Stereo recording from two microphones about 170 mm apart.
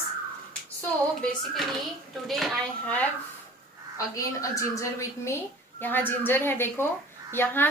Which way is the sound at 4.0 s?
20° left (ahead or behind).